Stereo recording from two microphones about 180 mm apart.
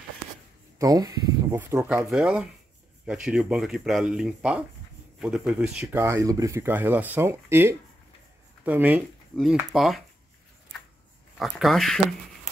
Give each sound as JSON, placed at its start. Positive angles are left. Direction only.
{"t": 0.7, "sound": "speech", "side_deg": -20}
{"t": 11.3, "sound": "speech", "side_deg": 0}